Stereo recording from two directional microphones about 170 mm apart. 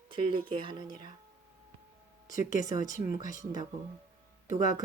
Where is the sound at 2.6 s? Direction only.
20° right (ahead or behind).